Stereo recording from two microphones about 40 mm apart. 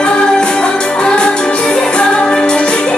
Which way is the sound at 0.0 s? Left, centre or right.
Left.